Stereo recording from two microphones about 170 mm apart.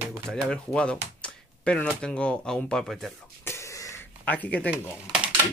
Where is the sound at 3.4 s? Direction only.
15° left (ahead or behind).